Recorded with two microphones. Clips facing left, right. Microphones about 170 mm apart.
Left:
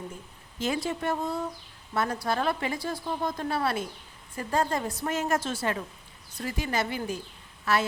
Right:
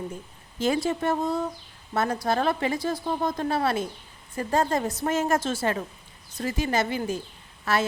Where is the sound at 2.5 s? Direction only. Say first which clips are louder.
Right 4 dB; 25° right (ahead or behind).